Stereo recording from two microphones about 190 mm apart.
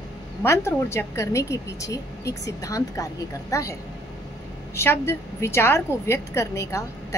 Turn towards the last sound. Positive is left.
turn(degrees=15)  # may be behind; listen again after turning